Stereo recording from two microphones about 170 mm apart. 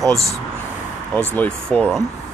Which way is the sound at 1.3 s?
10° left (ahead or behind).